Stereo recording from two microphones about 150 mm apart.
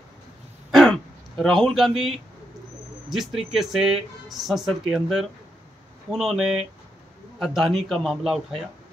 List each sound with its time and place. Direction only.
0.7 s throat clearing: centre (ahead or behind)
3.1 s speech: centre (ahead or behind)